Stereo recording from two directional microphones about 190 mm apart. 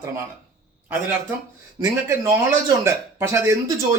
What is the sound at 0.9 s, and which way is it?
A man's voice, 10° right (ahead or behind).